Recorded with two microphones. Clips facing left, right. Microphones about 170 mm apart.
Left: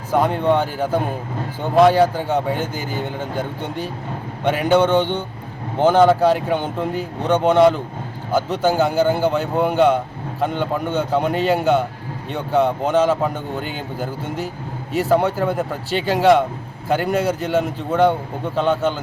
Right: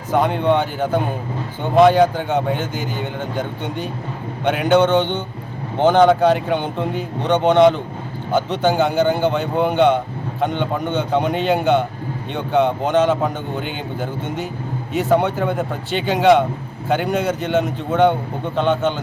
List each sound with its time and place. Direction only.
0.1 s a man's voice: centre (ahead or behind)